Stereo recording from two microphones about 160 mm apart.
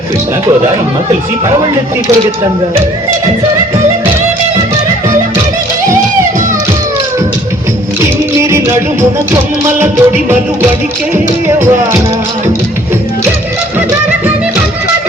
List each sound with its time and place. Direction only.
8.4 s music: 15° right (ahead or behind)
11.4 s music: 15° right (ahead or behind)